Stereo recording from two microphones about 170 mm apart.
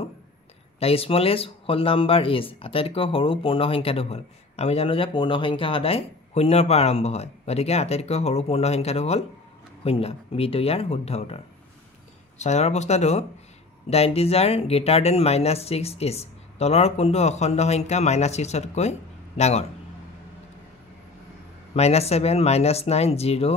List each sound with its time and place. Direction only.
0.7 s speech: 35° left (ahead or behind)
21.7 s speech: 40° left (ahead or behind)